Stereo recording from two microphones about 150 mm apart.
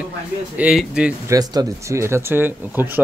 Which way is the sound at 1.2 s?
25° right (ahead or behind).